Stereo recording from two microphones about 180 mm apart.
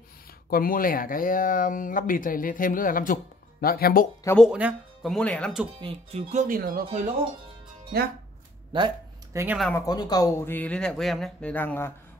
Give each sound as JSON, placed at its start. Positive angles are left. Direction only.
{"t": 0.5, "sound": "speech", "side_deg": 55}
{"t": 4.4, "sound": "speech", "side_deg": -5}
{"t": 5.1, "sound": "speech", "side_deg": 5}
{"t": 5.8, "sound": "speech", "side_deg": -35}
{"t": 8.7, "sound": "a sound", "side_deg": -20}
{"t": 9.8, "sound": "speech", "side_deg": 20}